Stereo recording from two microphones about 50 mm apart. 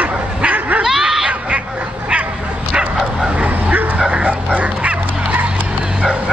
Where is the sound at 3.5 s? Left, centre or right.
Right.